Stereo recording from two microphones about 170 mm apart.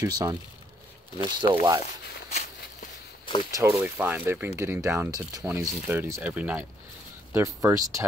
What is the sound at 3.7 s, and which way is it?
Speech, 10° right (ahead or behind).